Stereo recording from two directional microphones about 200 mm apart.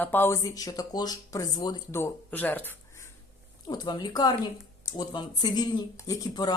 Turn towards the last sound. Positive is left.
turn(degrees=20)  # may be behind; listen again after turning